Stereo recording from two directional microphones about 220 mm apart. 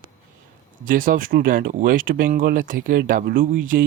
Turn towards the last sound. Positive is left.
turn(degrees=-40)  # may be behind; listen again after turning